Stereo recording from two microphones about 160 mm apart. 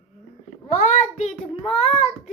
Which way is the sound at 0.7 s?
50° left (ahead or behind).